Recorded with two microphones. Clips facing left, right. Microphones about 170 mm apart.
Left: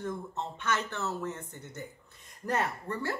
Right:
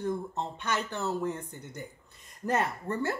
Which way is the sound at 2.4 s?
20° right (ahead or behind).